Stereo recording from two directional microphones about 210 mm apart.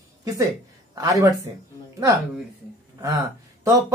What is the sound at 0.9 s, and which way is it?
Speech, 15° right (ahead or behind).